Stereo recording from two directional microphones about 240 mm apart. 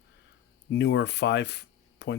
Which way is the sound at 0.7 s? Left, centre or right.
Left.